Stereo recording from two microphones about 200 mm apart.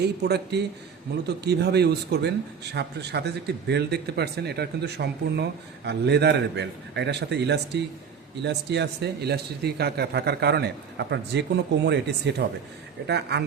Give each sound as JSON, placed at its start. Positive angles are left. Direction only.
{"t": 0.0, "sound": "speech", "side_deg": -55}